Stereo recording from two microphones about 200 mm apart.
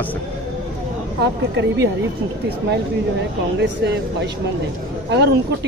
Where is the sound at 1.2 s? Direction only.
60° right (ahead or behind).